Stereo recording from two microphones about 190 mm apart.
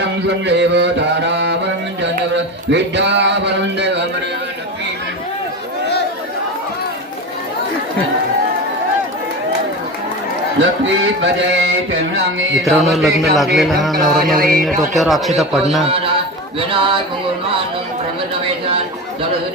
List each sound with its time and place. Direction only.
0.0 s music: 65° right (ahead or behind)
10.6 s music: 70° right (ahead or behind)
12.6 s a man's voice: centre (ahead or behind)
14.3 s speech: 50° right (ahead or behind)
14.9 s a man's voice: centre (ahead or behind)
16.7 s music: 25° right (ahead or behind)